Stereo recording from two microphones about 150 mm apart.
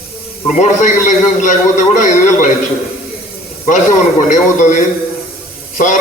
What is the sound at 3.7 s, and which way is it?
A man's voice, 55° left (ahead or behind).